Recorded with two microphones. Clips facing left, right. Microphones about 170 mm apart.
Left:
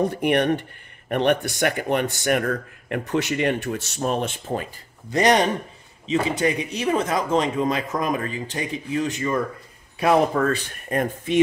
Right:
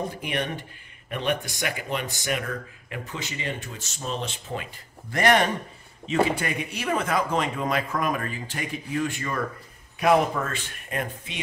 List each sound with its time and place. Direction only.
0.0 s speech: 60° left (ahead or behind)
5.1 s speech: 20° left (ahead or behind)
9.9 s speech: 35° left (ahead or behind)